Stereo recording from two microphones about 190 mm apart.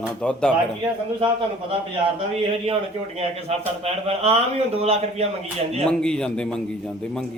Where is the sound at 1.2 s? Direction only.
30° right (ahead or behind).